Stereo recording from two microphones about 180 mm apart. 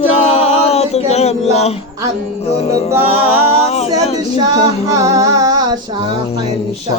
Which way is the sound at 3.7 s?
35° left (ahead or behind).